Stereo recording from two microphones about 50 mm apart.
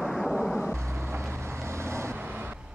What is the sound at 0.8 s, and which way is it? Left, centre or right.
Vehicle, right.